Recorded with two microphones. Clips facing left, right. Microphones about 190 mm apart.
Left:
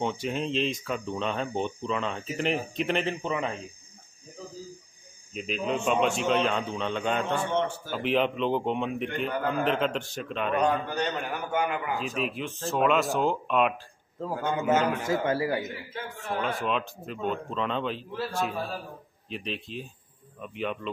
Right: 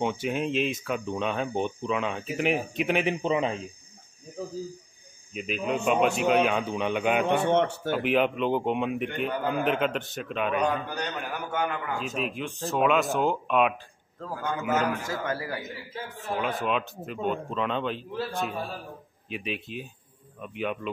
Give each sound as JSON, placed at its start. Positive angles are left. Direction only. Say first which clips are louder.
{"t": 0.0, "sound": "speech", "louder": "right 2 dB", "side_deg": -5}
{"t": 5.3, "sound": "a man's voice", "louder": "even", "side_deg": -5}
{"t": 7.3, "sound": "speech", "louder": "right 4 dB", "side_deg": -65}
{"t": 8.0, "sound": "a man's voice", "louder": "even", "side_deg": -5}
{"t": 11.2, "sound": "a man's voice", "louder": "left 1 dB", "side_deg": 5}
{"t": 14.2, "sound": "a man's voice", "louder": "left 3 dB", "side_deg": 20}
{"t": 16.2, "sound": "a man's voice", "louder": "right 1 dB", "side_deg": 0}